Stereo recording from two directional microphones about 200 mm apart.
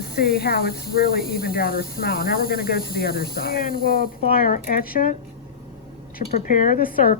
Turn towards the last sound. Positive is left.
turn(degrees=45)  # may be behind; listen again after turning